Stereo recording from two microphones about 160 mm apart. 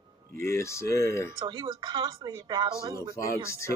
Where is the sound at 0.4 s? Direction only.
15° left (ahead or behind).